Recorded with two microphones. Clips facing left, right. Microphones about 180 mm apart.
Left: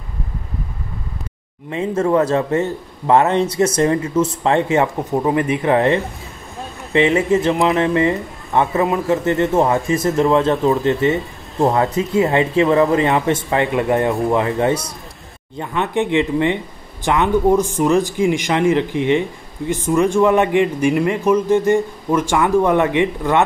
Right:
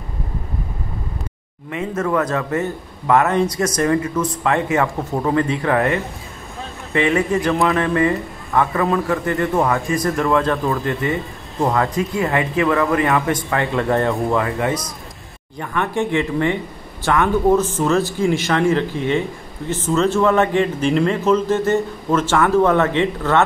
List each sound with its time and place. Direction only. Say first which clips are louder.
1.7 s speech: left 4 dB; 30° left (ahead or behind)